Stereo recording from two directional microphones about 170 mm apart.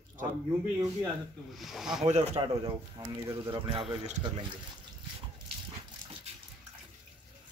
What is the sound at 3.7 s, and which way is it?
Speech, 30° right (ahead or behind).